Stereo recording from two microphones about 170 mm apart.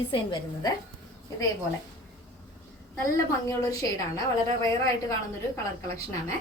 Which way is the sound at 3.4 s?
20° left (ahead or behind).